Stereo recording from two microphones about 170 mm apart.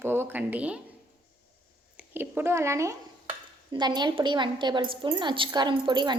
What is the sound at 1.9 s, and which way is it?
A woman's voice, 10° right (ahead or behind).